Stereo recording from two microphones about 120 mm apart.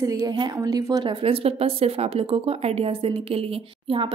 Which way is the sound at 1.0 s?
50° right (ahead or behind).